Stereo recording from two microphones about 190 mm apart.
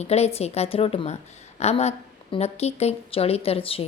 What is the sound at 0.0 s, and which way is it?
A woman's voice, 35° left (ahead or behind).